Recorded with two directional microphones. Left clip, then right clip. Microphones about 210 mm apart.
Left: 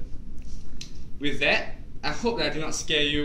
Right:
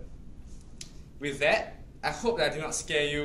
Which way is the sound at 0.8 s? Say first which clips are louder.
Left 4 dB; 20° right (ahead or behind).